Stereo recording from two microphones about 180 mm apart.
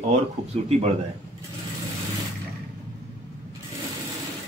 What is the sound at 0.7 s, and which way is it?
Speech, 40° right (ahead or behind).